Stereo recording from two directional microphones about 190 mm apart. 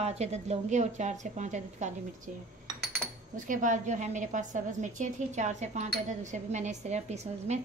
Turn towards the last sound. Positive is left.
turn(degrees=-35)  # may be behind; listen again after turning